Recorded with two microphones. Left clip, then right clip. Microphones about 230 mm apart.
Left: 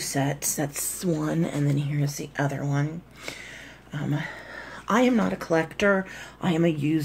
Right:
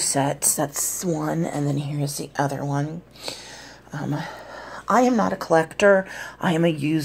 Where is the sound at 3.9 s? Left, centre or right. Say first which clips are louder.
Right 2 dB; centre.